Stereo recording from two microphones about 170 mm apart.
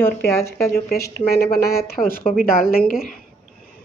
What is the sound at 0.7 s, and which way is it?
A woman's voice, 65° left (ahead or behind).